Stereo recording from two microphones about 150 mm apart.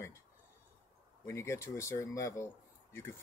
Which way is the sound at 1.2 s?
20° left (ahead or behind).